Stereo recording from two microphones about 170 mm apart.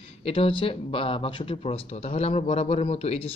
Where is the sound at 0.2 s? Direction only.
35° left (ahead or behind).